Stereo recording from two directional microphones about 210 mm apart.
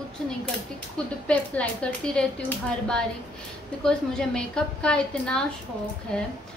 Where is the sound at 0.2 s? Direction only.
5° left (ahead or behind).